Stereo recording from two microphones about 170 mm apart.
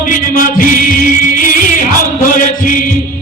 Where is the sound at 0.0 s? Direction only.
55° left (ahead or behind).